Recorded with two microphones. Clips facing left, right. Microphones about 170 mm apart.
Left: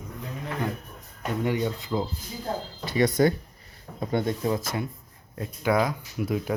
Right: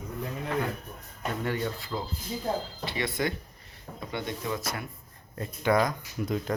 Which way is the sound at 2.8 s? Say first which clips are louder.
Left 9 dB; 40° left (ahead or behind).